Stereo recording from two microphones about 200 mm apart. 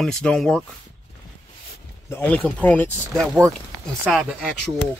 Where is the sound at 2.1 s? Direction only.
10° left (ahead or behind).